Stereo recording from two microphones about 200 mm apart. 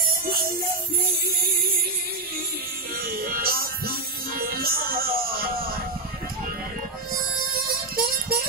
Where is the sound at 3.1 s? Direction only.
45° right (ahead or behind).